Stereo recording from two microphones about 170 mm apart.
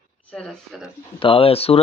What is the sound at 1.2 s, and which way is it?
Speech, 30° left (ahead or behind).